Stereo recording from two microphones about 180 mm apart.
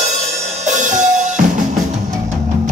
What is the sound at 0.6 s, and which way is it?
Drum kit, 45° right (ahead or behind).